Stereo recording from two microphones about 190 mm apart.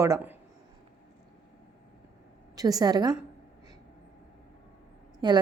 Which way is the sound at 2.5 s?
20° right (ahead or behind).